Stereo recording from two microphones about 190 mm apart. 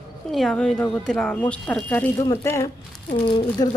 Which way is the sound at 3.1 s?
25° left (ahead or behind).